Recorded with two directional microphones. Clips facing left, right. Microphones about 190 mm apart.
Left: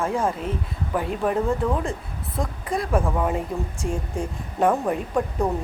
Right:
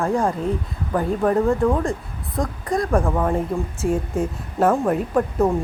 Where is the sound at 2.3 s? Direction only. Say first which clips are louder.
Right 4 dB; centre (ahead or behind).